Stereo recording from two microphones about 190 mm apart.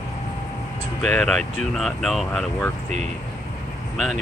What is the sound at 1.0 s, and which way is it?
Speech, 5° left (ahead or behind).